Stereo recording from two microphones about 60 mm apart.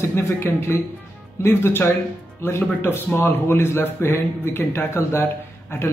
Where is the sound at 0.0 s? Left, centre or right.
Left.